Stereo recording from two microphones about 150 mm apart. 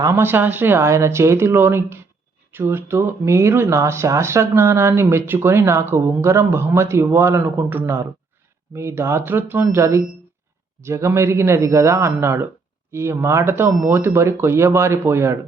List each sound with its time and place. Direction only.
0.0 s a man's voice: 15° right (ahead or behind)